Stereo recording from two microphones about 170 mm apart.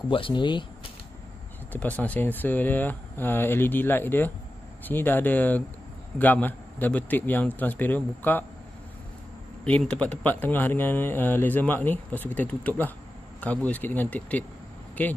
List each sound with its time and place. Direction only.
0.1 s speech: 30° left (ahead or behind)
1.7 s speech: 10° left (ahead or behind)
9.7 s speech: 5° left (ahead or behind)